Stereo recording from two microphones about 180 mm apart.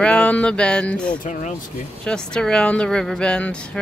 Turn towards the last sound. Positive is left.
turn(degrees=5)  # may be behind; listen again after turning